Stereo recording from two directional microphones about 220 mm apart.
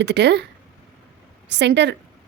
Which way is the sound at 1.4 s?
50° right (ahead or behind).